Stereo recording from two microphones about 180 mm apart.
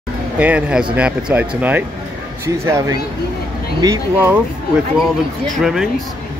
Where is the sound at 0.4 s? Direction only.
5° right (ahead or behind).